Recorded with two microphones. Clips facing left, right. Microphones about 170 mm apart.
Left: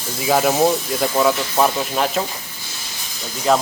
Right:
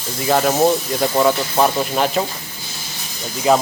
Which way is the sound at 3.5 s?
5° right (ahead or behind).